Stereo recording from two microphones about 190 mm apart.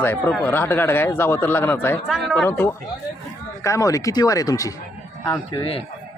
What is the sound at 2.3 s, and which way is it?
A man's voice, 10° left (ahead or behind).